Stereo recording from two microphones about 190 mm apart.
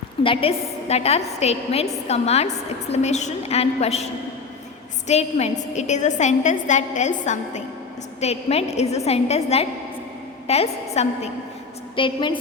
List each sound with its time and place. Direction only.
0.2 s a woman's voice: 30° left (ahead or behind)